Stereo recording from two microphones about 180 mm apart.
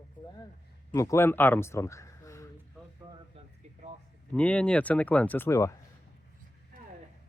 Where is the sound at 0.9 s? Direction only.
15° left (ahead or behind).